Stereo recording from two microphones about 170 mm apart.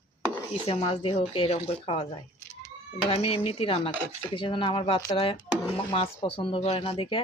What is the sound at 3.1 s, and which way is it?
Speech, 35° left (ahead or behind).